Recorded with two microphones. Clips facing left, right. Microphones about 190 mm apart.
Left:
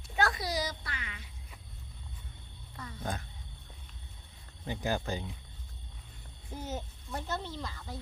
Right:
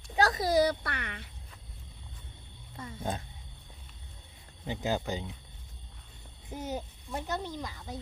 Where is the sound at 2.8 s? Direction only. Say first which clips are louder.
Right 3 dB; 25° right (ahead or behind).